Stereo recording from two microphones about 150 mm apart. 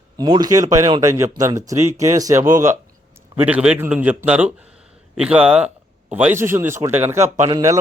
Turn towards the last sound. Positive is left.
turn(degrees=-20)  # may be behind; listen again after turning